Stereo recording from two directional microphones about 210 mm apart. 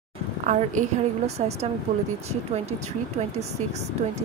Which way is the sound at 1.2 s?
30° right (ahead or behind).